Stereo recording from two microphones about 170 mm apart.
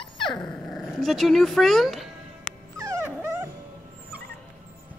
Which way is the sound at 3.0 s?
15° right (ahead or behind).